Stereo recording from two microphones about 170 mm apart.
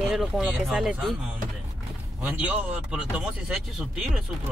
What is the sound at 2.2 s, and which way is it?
Speech, 5° right (ahead or behind).